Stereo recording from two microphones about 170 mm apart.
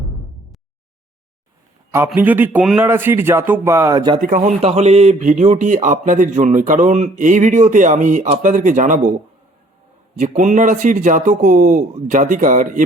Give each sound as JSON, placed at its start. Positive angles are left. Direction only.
{"t": 2.0, "sound": "speech", "side_deg": -10}
{"t": 4.2, "sound": "speech", "side_deg": -50}
{"t": 10.2, "sound": "speech", "side_deg": -45}